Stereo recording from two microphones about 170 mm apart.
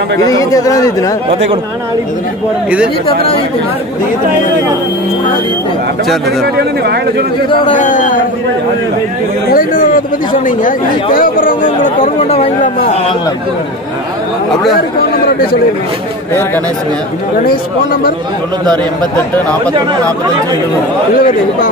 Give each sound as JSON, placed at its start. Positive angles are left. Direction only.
{"t": 0.3, "sound": "speech", "side_deg": 20}
{"t": 6.5, "sound": "speech", "side_deg": -70}
{"t": 7.7, "sound": "speech", "side_deg": 50}
{"t": 9.5, "sound": "speech", "side_deg": 55}
{"t": 21.2, "sound": "speech", "side_deg": 55}